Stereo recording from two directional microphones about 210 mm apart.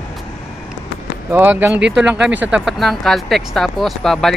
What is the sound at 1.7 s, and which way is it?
Speech, 55° right (ahead or behind).